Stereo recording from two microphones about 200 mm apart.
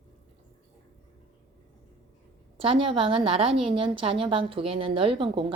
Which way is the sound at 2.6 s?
25° right (ahead or behind).